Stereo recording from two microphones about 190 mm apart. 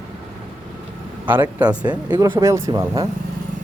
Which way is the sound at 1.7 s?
25° right (ahead or behind).